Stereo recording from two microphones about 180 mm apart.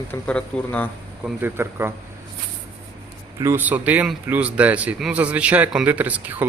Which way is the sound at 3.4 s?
15° right (ahead or behind).